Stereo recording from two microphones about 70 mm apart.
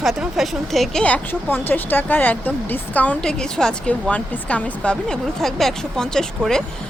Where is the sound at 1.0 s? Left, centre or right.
Left.